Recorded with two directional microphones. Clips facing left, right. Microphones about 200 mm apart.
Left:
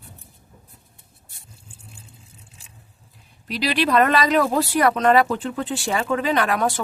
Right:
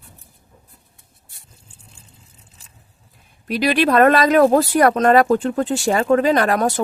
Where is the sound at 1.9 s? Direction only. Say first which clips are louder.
Left 3 dB; 10° left (ahead or behind).